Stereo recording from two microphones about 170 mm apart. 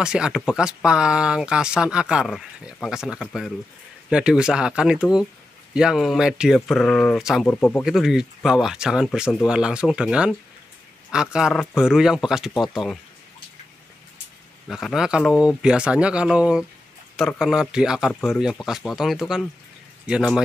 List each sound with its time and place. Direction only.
0.0 s speech: 5° right (ahead or behind)
7.4 s speech: 10° left (ahead or behind)
7.8 s speech: centre (ahead or behind)
14.7 s speech: centre (ahead or behind)